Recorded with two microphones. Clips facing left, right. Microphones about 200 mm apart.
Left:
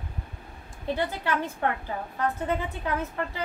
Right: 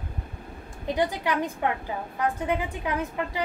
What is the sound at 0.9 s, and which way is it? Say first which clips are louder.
Speech: right 3 dB; 15° right (ahead or behind).